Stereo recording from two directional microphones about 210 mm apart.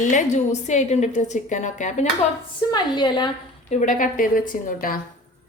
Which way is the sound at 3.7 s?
35° left (ahead or behind).